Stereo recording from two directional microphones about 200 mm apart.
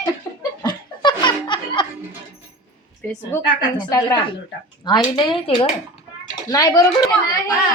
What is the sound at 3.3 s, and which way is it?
Speech, 15° left (ahead or behind).